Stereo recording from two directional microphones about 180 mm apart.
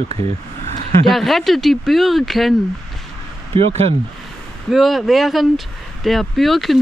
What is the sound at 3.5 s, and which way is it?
Speech, 35° right (ahead or behind).